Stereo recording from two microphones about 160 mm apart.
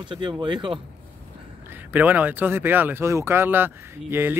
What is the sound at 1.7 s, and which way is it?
Speech, 10° right (ahead or behind).